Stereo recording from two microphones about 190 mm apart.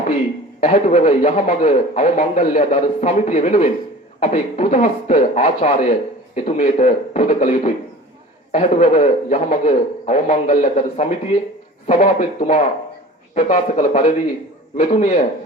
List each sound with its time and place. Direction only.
0.6 s speech: 40° left (ahead or behind)